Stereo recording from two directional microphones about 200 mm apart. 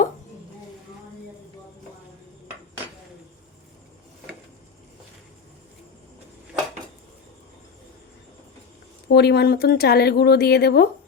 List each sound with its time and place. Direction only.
9.0 s speech: 55° left (ahead or behind)